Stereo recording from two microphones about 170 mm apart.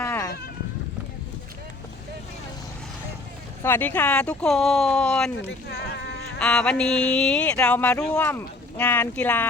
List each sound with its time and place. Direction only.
0.0 s goat: 10° left (ahead or behind)
3.6 s speech: 10° left (ahead or behind)
5.5 s speech: 85° left
6.4 s speech: 5° left (ahead or behind)